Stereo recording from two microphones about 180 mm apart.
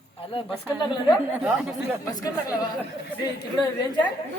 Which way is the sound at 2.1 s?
20° left (ahead or behind).